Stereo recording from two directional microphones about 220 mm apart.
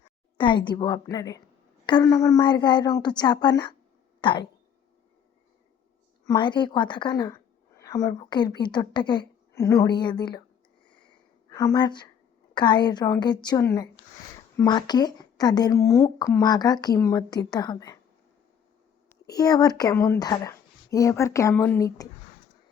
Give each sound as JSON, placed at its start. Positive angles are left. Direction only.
{"t": 0.0, "sound": "a woman's voice", "side_deg": 20}
{"t": 6.2, "sound": "a woman's voice", "side_deg": 20}
{"t": 11.5, "sound": "a woman's voice", "side_deg": 15}
{"t": 19.0, "sound": "speech", "side_deg": 15}